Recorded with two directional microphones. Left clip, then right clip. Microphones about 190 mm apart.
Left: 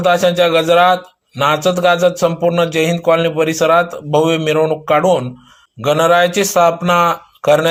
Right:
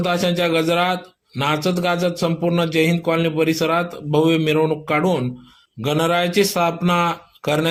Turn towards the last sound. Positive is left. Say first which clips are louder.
# left 9 dB
turn(degrees=0)  # may be behind; listen again after turning